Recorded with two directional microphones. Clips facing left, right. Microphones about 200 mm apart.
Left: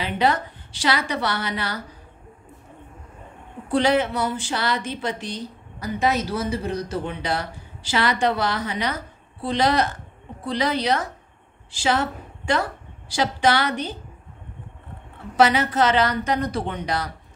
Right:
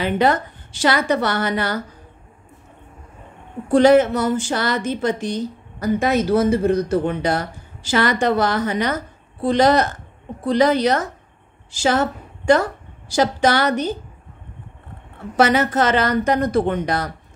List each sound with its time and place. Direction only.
0.0 s a woman's voice: 50° right (ahead or behind)
3.7 s a woman's voice: 45° right (ahead or behind)
15.3 s a woman's voice: 45° right (ahead or behind)